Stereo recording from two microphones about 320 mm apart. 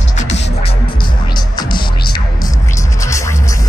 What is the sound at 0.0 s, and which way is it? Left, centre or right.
Music, left.